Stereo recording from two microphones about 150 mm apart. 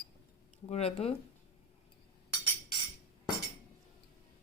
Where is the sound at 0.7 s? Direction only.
45° left (ahead or behind).